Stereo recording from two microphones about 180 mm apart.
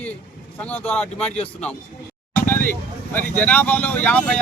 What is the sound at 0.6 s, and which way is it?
Speech, 10° left (ahead or behind).